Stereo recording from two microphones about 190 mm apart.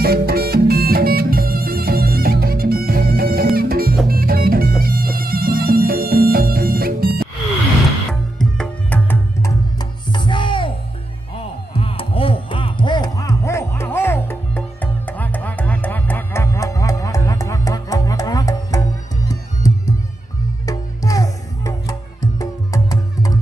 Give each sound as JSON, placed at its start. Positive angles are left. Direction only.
{"t": 0.0, "sound": "music", "side_deg": -55}
{"t": 8.1, "sound": "music", "side_deg": 5}